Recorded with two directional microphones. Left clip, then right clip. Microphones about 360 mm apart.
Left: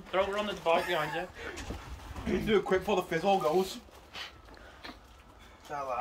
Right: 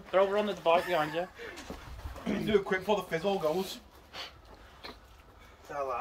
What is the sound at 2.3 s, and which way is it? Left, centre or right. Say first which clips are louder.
Speech: left 2 dB; right.